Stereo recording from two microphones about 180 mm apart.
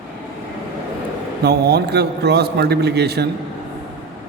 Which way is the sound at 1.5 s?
65° right (ahead or behind).